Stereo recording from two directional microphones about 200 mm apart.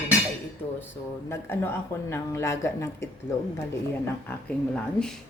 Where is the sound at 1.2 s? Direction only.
10° left (ahead or behind).